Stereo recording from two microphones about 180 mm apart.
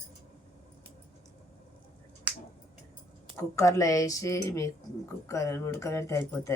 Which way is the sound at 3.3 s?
15° left (ahead or behind).